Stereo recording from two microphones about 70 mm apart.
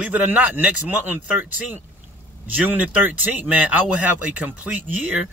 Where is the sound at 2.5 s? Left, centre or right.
Right.